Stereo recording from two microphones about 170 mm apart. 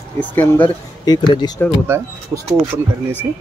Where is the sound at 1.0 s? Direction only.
25° left (ahead or behind).